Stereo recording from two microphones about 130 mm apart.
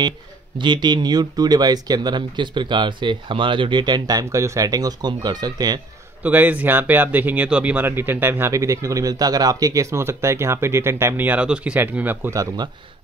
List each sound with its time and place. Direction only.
0.6 s speech: 35° right (ahead or behind)
6.2 s speech: 10° right (ahead or behind)